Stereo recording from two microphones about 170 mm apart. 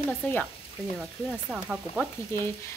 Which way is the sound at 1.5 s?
5° right (ahead or behind).